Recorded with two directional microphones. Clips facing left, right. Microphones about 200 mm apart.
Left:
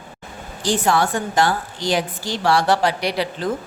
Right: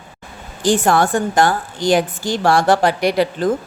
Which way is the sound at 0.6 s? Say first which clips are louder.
Right 4 dB; 50° right (ahead or behind).